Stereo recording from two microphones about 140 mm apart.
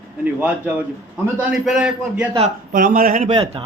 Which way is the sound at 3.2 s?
40° right (ahead or behind).